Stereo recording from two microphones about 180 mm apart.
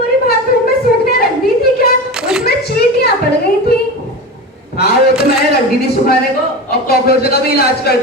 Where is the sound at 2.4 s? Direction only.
60° left (ahead or behind).